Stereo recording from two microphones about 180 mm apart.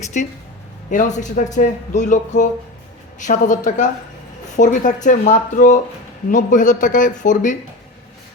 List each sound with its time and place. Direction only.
0.1 s a man's voice: 45° left (ahead or behind)